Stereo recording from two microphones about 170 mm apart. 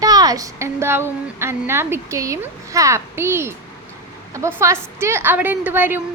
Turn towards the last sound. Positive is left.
turn(degrees=-10)  # may be behind; listen again after turning